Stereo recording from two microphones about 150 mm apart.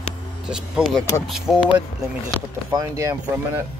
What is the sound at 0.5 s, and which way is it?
Speech, 5° right (ahead or behind).